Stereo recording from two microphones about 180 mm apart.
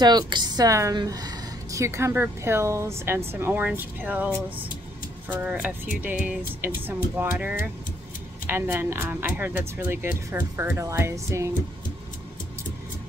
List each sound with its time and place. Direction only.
0.0 s a woman's voice: 25° right (ahead or behind)